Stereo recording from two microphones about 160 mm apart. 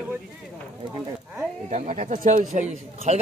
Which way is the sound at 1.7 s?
50° right (ahead or behind).